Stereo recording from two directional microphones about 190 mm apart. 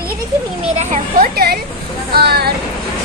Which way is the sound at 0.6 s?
40° right (ahead or behind).